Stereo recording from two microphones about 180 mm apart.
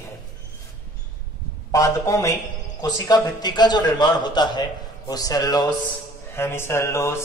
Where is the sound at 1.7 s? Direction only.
15° left (ahead or behind).